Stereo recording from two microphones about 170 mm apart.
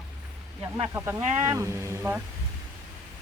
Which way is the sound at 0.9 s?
10° right (ahead or behind).